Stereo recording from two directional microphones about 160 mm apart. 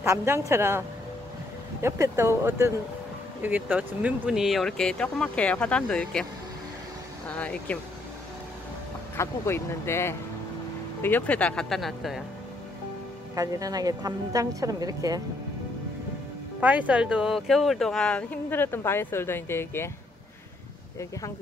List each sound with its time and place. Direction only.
0.0 s speech: 15° right (ahead or behind); by 6.2 s 5° left (ahead or behind)
7.2 s speech: 10° left (ahead or behind)
9.1 s speech: 15° left (ahead or behind); by 12.2 s centre (ahead or behind)
13.3 s a woman's voice: 20° right (ahead or behind)
16.5 s speech: 10° right (ahead or behind); by 19.9 s 15° left (ahead or behind)